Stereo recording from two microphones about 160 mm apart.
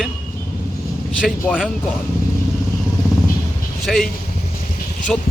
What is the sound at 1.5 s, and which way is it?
Speech, 5° right (ahead or behind).